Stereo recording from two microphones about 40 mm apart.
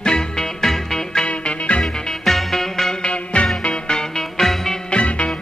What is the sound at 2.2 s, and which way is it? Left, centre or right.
Music, centre.